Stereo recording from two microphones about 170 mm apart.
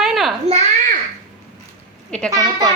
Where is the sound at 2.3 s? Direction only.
20° right (ahead or behind).